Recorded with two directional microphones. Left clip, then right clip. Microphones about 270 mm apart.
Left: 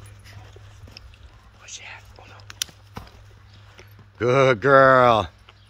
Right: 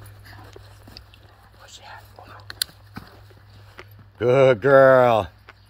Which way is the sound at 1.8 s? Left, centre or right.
Centre.